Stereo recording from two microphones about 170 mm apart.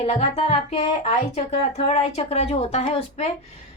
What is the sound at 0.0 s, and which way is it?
A woman's voice, 35° left (ahead or behind).